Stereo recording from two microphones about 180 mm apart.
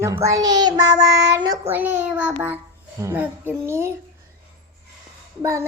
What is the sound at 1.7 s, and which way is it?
A child's voice, 10° right (ahead or behind).